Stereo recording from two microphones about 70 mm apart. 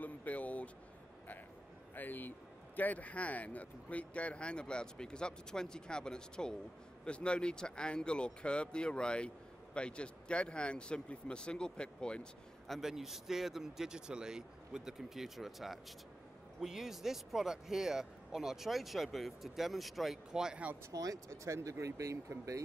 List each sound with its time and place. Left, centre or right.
0.0 s a sound: left
2.0 s speech: left; by 20.6 s centre
20.9 s speech: right